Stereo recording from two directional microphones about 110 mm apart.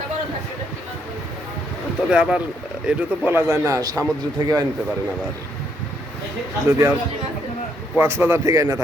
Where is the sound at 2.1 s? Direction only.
10° right (ahead or behind); by 4.1 s 35° right (ahead or behind).